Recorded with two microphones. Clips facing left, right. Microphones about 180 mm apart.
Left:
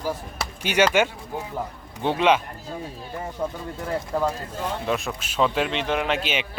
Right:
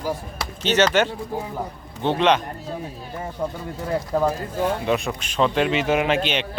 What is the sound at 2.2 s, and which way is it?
A man's voice, 5° left (ahead or behind).